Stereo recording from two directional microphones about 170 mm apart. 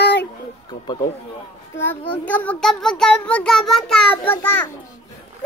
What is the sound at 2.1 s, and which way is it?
A child's voice, 10° left (ahead or behind).